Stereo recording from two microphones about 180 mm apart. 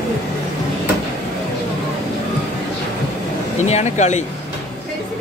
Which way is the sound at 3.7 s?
40° left (ahead or behind).